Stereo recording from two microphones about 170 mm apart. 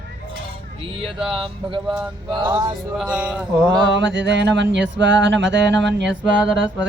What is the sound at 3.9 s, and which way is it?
Music, 90° right.